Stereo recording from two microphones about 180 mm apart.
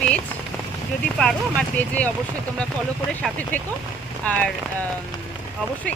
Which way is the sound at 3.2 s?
5° left (ahead or behind).